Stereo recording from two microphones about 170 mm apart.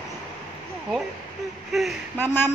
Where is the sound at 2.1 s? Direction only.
15° left (ahead or behind).